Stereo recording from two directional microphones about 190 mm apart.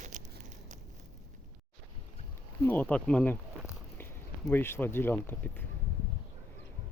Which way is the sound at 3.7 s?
10° left (ahead or behind).